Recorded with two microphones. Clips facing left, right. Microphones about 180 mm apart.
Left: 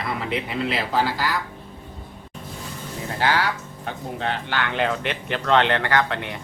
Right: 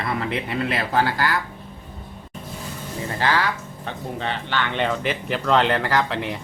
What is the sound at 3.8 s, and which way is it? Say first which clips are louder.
Speech: left 1 dB; 5° left (ahead or behind).